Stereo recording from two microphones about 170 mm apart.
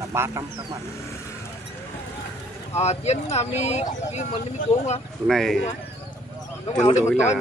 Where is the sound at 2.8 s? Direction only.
40° left (ahead or behind).